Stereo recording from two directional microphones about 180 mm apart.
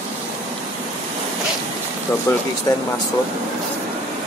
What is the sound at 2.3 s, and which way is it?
Speech, 15° left (ahead or behind).